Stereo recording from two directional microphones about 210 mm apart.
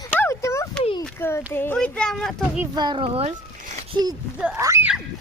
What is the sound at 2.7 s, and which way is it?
Speech, 20° right (ahead or behind).